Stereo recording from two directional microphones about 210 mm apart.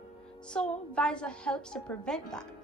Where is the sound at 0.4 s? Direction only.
5° left (ahead or behind).